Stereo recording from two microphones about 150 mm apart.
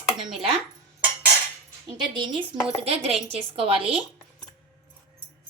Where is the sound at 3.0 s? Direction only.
40° right (ahead or behind).